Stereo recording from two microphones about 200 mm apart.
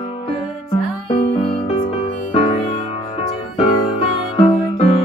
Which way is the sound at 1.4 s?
25° left (ahead or behind).